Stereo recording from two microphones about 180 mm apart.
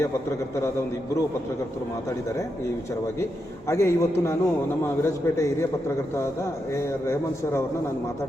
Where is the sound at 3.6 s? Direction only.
15° left (ahead or behind).